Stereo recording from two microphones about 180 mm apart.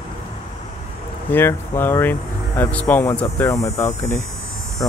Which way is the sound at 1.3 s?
10° left (ahead or behind).